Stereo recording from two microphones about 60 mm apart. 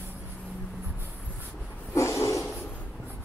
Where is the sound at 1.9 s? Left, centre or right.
Left.